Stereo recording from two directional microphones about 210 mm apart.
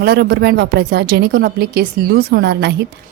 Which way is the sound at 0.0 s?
50° right (ahead or behind).